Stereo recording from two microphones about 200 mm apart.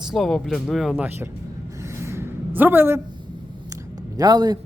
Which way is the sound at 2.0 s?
10° right (ahead or behind).